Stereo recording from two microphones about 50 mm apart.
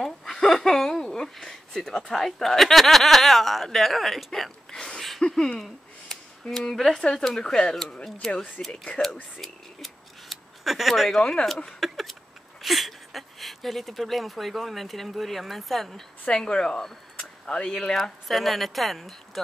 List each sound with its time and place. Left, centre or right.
0.0 s chuckle: centre
1.0 s speech: centre
6.1 s a sound: centre
6.5 s a woman's voice: centre
8.6 s speech: left
9.4 s scissors: centre
11.1 s speech: centre
11.6 s a sound: centre
12.6 s speech: centre
16.3 s speech: centre
18.0 s a woman's voice: centre